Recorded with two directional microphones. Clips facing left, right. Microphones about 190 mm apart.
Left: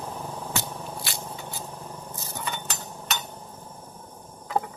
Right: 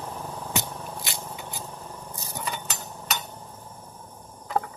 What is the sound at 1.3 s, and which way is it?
Shuffling cards, 15° right (ahead or behind).